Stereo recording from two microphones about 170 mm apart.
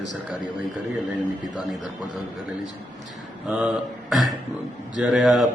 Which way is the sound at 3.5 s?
5° right (ahead or behind).